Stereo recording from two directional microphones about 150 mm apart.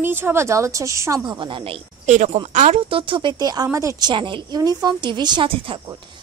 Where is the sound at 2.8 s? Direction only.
35° right (ahead or behind).